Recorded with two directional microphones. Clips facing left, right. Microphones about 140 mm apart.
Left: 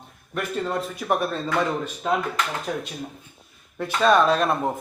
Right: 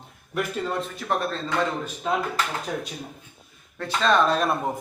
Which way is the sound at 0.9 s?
10° left (ahead or behind).